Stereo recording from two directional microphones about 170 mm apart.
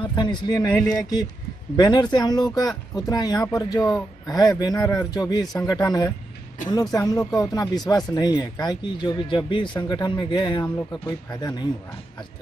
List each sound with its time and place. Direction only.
0.0 s speech: 25° left (ahead or behind)